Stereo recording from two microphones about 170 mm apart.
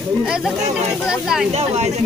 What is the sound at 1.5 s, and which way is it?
Speech, 40° right (ahead or behind).